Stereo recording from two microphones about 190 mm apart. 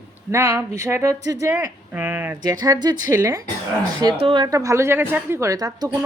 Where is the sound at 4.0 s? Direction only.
25° right (ahead or behind).